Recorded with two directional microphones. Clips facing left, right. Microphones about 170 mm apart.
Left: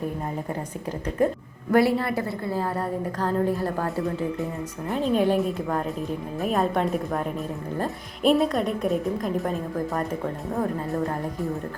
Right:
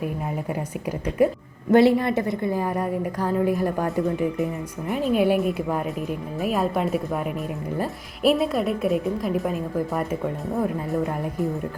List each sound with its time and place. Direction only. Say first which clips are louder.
1.2 s a woman's voice: right 3 dB; 10° right (ahead or behind)
1.7 s a woman's voice: right 4 dB; 20° right (ahead or behind)